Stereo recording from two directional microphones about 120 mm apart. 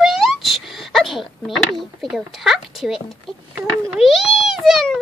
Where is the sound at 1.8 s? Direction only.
Centre (ahead or behind).